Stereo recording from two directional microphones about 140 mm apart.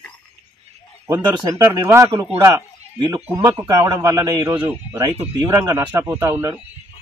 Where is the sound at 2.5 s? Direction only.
30° right (ahead or behind).